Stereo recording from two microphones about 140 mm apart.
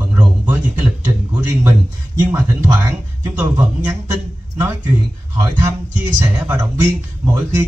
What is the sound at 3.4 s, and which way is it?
Speech, 15° right (ahead or behind).